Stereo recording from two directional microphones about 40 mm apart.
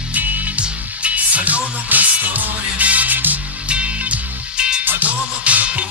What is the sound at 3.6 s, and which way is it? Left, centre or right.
Music, right.